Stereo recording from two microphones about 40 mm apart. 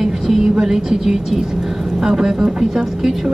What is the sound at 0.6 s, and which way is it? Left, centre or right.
Speech, centre.